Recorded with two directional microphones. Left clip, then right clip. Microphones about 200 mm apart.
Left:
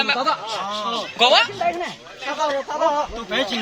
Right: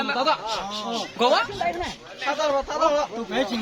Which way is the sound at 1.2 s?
45° right (ahead or behind).